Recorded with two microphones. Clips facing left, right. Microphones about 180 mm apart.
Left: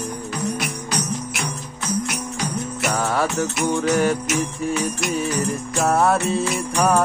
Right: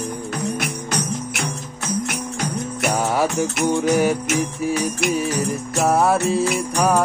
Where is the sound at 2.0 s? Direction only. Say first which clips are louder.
Right 1 dB; 50° right (ahead or behind).